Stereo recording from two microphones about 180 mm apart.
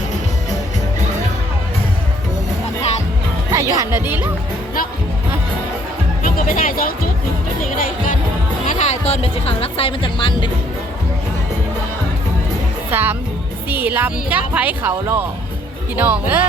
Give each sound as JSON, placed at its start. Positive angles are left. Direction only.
{"t": 3.5, "sound": "speech", "side_deg": -15}
{"t": 6.2, "sound": "speech", "side_deg": 50}
{"t": 8.6, "sound": "speech", "side_deg": 45}
{"t": 12.9, "sound": "speech", "side_deg": -10}